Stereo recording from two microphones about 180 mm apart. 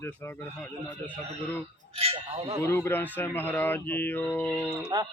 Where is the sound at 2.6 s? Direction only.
10° left (ahead or behind).